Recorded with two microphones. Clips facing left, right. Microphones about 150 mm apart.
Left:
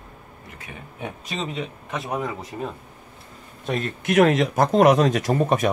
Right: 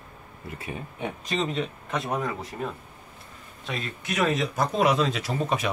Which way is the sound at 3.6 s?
45° left (ahead or behind).